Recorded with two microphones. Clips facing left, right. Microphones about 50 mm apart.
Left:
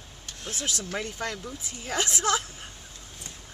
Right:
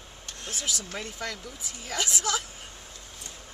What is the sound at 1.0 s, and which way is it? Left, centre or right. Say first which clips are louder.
A woman's voice: left 3 dB; left.